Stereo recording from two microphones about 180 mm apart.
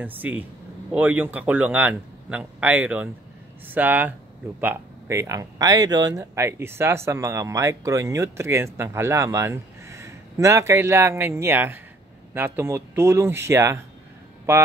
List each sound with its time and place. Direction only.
0.0 s speech: 10° right (ahead or behind)